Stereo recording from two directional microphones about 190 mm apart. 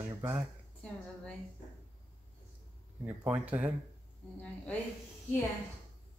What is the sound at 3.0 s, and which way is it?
Speech, 10° right (ahead or behind).